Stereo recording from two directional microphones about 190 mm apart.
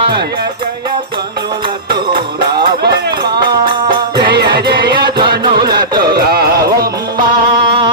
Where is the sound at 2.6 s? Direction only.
60° right (ahead or behind).